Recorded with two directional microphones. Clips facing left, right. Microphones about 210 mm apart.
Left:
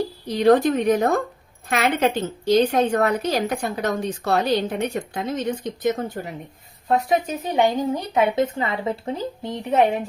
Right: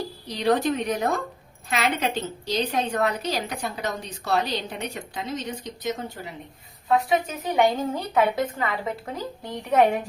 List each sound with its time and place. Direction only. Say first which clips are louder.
0.3 s a woman's voice: left 6 dB; 50° left (ahead or behind)
7.4 s a woman's voice: even; 20° left (ahead or behind)